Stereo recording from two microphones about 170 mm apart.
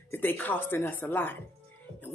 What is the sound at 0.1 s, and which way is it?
A woman's voice, 10° left (ahead or behind).